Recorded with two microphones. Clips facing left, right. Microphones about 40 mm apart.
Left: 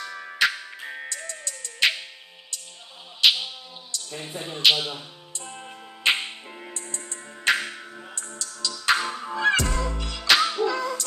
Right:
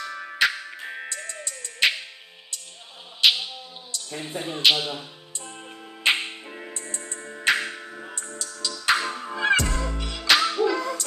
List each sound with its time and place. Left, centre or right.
0.0 s music: centre
3.2 s music: centre
3.9 s speech: centre
4.6 s music: centre
5.4 s music: centre
7.9 s music: centre
8.2 s music: centre
10.2 s music: centre
10.7 s music: centre